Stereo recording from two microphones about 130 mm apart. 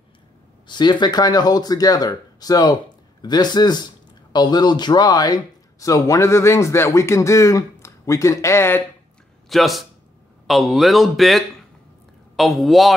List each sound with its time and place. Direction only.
0.7 s speech: 35° left (ahead or behind); by 8.8 s 20° left (ahead or behind)
9.5 s speech: centre (ahead or behind)